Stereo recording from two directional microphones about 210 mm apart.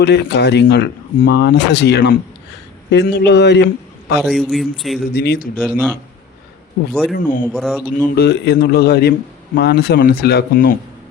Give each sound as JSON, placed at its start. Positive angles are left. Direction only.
{"t": 0.0, "sound": "speech", "side_deg": 55}
{"t": 4.2, "sound": "a man's voice", "side_deg": 0}
{"t": 5.1, "sound": "speech", "side_deg": 50}
{"t": 5.6, "sound": "speech", "side_deg": -5}
{"t": 7.1, "sound": "speech", "side_deg": 40}
{"t": 7.4, "sound": "a man's voice", "side_deg": 0}
{"t": 8.0, "sound": "speech", "side_deg": 50}